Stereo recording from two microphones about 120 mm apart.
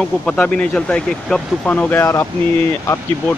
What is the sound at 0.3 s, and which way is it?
Speech, 10° left (ahead or behind).